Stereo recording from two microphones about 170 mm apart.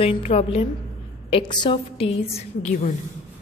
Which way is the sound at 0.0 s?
35° left (ahead or behind).